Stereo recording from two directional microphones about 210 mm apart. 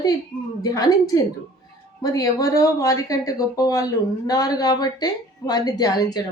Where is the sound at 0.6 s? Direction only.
15° left (ahead or behind).